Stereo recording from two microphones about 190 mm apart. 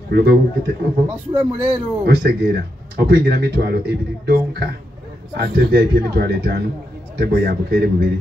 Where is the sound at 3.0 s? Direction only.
55° right (ahead or behind).